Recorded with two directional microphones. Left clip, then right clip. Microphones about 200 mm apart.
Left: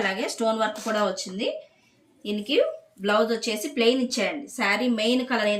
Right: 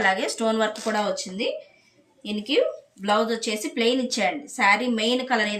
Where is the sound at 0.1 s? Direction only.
55° right (ahead or behind).